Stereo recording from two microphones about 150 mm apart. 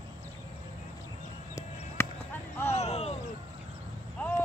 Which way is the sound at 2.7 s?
45° left (ahead or behind).